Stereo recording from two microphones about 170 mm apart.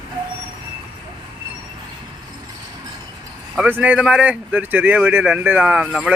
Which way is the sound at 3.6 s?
10° right (ahead or behind).